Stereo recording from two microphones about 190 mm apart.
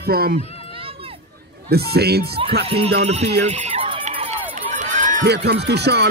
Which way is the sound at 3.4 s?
35° right (ahead or behind).